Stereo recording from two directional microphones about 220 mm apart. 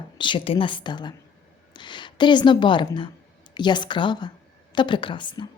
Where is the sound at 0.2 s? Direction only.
20° left (ahead or behind).